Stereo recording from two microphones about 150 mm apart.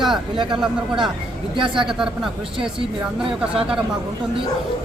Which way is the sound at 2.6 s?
35° right (ahead or behind).